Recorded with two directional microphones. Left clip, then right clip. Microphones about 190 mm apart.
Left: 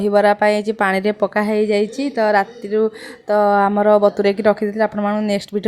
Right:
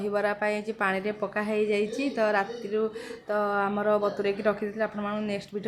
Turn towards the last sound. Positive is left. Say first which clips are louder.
# left 12 dB
turn(degrees=40)  # may be behind; listen again after turning